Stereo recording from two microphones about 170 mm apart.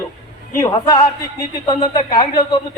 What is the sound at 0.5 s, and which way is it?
A man's voice, 20° left (ahead or behind).